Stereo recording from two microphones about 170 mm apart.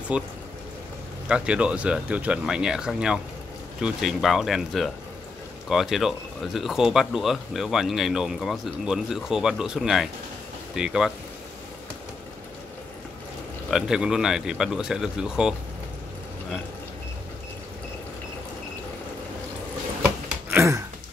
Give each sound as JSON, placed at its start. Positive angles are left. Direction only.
{"t": 0.1, "sound": "speech", "side_deg": -5}
{"t": 1.3, "sound": "speech", "side_deg": -5}
{"t": 13.7, "sound": "speech", "side_deg": -5}
{"t": 20.4, "sound": "a sound", "side_deg": -15}